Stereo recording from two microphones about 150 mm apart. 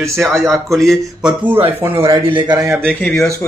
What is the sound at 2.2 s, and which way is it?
Speech, 30° right (ahead or behind).